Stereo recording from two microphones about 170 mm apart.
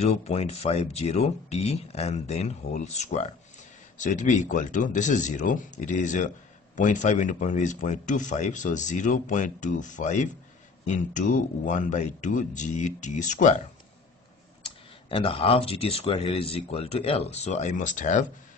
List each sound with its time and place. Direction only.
0.0 s speech: 40° left (ahead or behind)
15.0 s speech: 35° left (ahead or behind)